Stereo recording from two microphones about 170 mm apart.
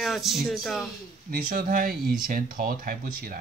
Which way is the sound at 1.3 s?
55° right (ahead or behind).